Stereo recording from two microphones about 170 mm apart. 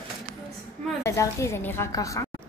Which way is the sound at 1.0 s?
15° left (ahead or behind).